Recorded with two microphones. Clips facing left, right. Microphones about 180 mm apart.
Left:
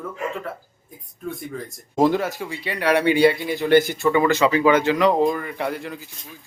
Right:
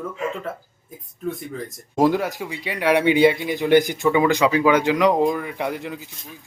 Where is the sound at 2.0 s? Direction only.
10° right (ahead or behind).